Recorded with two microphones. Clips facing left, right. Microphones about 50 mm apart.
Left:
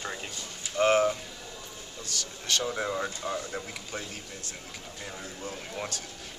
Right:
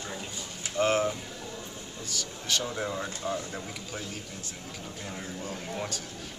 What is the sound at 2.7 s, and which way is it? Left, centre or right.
Speech, centre.